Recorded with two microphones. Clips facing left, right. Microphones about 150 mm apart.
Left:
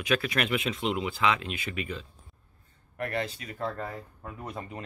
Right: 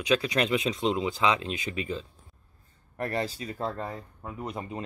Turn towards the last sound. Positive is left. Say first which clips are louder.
# right 3 dB
turn(degrees=-20)  # may be behind; listen again after turning